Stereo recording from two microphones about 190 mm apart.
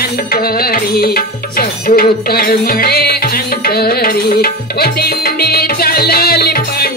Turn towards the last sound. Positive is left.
turn(degrees=55)  # may be behind; listen again after turning